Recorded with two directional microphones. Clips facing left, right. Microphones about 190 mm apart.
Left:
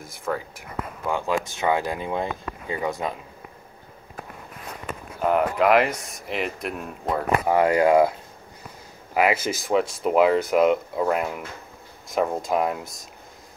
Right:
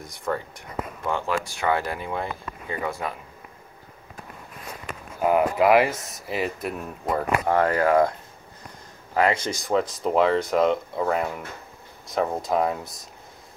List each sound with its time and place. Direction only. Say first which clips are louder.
0.0 s speech: even; centre (ahead or behind); by 3.1 s 15° left (ahead or behind)
5.2 s speech: right 1 dB; 5° right (ahead or behind); by 8.1 s 15° left (ahead or behind)
9.1 s speech: left 1 dB; 10° left (ahead or behind)